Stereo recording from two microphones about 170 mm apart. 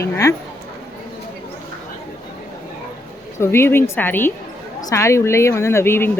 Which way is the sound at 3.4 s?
15° left (ahead or behind).